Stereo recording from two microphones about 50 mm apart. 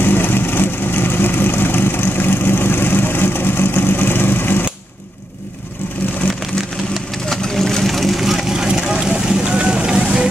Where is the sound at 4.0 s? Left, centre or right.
Left.